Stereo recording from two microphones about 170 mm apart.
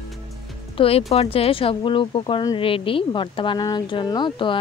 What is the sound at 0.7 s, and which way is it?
Speech, 35° left (ahead or behind).